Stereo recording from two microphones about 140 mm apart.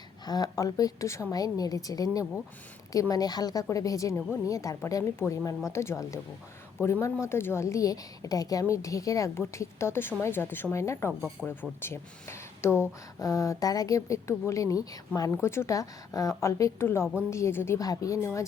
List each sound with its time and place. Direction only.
0.3 s a woman's voice: 25° left (ahead or behind)